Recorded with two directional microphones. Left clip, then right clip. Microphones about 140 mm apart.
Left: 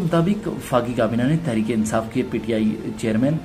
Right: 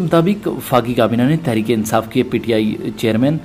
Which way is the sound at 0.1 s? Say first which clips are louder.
Right 7 dB; 35° right (ahead or behind).